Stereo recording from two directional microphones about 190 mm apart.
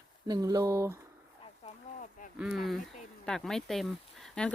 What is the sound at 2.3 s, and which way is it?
Speech, 5° right (ahead or behind).